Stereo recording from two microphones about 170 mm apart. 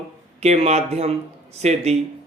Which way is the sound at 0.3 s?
40° right (ahead or behind).